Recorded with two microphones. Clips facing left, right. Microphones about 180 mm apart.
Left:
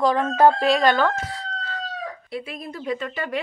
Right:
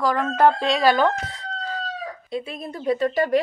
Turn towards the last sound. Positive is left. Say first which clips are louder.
# right 7 dB
turn(degrees=-40)  # may be behind; listen again after turning